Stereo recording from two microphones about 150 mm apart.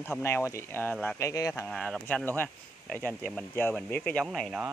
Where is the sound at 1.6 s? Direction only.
5° left (ahead or behind).